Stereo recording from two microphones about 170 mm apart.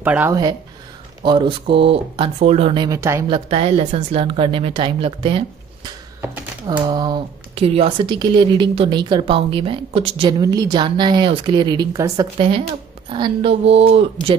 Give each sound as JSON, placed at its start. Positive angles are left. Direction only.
{"t": 0.0, "sound": "speech", "side_deg": -10}
{"t": 0.3, "sound": "speech", "side_deg": -20}
{"t": 3.3, "sound": "speech", "side_deg": -35}
{"t": 5.9, "sound": "typing", "side_deg": -10}
{"t": 6.8, "sound": "speech", "side_deg": -25}
{"t": 10.4, "sound": "speech", "side_deg": -20}
{"t": 12.4, "sound": "speech", "side_deg": -30}